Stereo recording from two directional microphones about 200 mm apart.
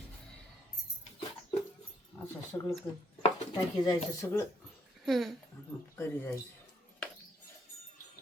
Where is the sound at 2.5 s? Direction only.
10° left (ahead or behind).